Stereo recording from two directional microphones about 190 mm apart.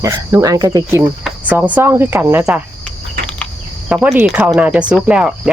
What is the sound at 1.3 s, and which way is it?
Speech, 5° right (ahead or behind).